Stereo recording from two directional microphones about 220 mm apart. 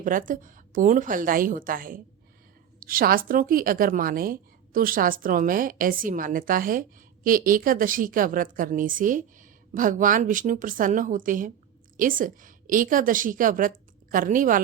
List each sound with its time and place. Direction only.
0.0 s a woman's voice: 40° right (ahead or behind)